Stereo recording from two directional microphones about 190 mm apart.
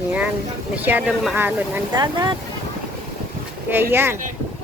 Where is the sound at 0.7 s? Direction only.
10° right (ahead or behind).